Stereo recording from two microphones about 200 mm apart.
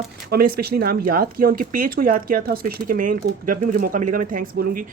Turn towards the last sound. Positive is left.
turn(degrees=-45)  # may be behind; listen again after turning